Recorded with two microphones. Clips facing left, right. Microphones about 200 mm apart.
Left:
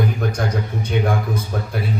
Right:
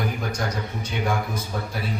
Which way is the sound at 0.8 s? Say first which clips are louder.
Left 5 dB; 55° left (ahead or behind).